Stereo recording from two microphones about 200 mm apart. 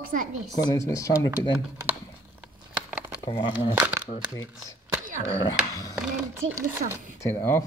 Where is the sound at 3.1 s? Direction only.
20° left (ahead or behind).